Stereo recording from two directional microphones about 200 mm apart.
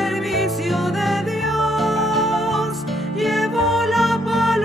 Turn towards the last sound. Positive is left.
turn(degrees=0)  # may be behind; listen again after turning